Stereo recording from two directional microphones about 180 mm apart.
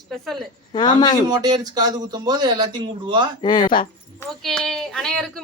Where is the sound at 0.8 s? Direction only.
25° left (ahead or behind).